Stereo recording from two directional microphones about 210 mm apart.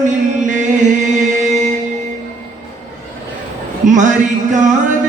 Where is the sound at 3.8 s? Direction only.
35° right (ahead or behind).